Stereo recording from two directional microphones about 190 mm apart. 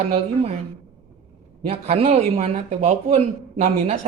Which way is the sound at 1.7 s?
30° right (ahead or behind).